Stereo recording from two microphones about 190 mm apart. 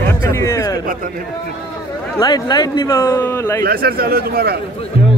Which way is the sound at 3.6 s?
55° right (ahead or behind).